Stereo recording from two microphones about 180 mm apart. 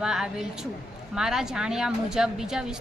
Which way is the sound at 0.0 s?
5° right (ahead or behind).